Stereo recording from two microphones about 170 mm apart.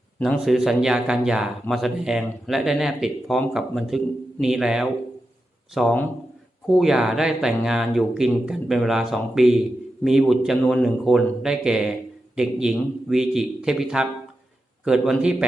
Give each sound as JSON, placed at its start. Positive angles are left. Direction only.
{"t": 0.2, "sound": "speech", "side_deg": 0}